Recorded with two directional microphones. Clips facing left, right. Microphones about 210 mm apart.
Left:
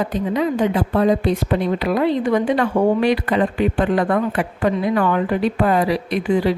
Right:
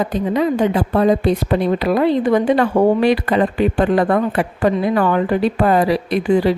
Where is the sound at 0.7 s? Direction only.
40° right (ahead or behind).